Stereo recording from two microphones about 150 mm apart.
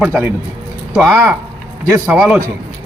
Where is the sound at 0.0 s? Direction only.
15° right (ahead or behind).